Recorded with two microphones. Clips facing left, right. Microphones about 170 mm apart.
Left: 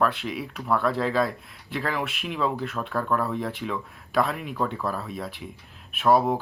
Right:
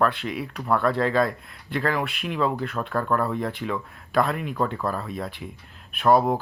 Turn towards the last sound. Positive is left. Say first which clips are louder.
# right 1 dB
turn(degrees=0)  # may be behind; listen again after turning